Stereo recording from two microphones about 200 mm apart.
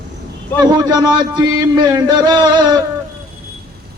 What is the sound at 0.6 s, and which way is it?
Speech, 20° right (ahead or behind).